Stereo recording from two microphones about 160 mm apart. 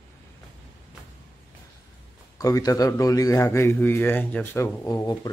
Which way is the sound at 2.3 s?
20° left (ahead or behind).